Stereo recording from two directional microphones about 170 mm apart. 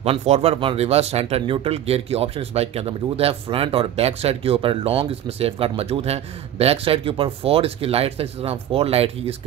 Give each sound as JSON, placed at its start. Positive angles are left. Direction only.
{"t": 0.0, "sound": "speech", "side_deg": -40}